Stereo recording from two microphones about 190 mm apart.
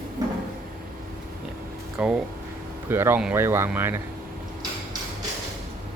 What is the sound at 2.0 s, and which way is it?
Speech, 5° right (ahead or behind).